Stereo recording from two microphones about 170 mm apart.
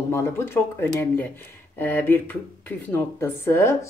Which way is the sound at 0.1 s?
15° left (ahead or behind).